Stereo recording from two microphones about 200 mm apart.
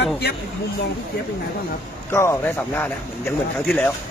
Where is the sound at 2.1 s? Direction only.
10° left (ahead or behind).